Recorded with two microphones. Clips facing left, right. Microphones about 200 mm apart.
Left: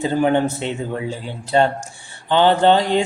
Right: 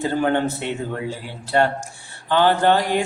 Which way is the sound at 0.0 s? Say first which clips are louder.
Left 3 dB; 15° left (ahead or behind).